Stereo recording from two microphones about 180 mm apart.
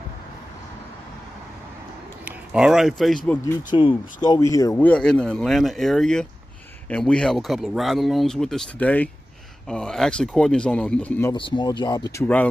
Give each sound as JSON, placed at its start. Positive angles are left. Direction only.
{"t": 2.2, "sound": "speech", "side_deg": -5}
{"t": 3.7, "sound": "speech", "side_deg": 25}
{"t": 4.8, "sound": "speech", "side_deg": 5}
{"t": 11.3, "sound": "speech", "side_deg": 25}